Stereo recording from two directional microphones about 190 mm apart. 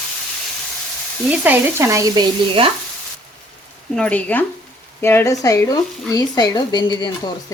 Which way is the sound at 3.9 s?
5° left (ahead or behind).